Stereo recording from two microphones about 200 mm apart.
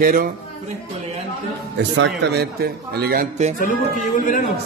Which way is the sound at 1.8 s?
65° right (ahead or behind).